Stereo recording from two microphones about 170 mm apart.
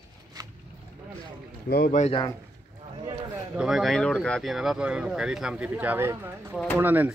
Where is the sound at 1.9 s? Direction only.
45° left (ahead or behind).